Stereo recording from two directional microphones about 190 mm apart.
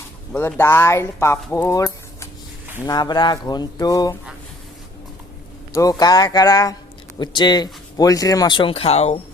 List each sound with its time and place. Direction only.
0.3 s speech: 10° left (ahead or behind)
5.7 s speech: 15° left (ahead or behind); by 9.1 s 35° left (ahead or behind)